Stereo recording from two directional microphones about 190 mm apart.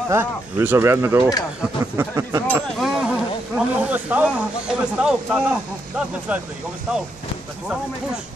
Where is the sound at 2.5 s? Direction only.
Centre (ahead or behind).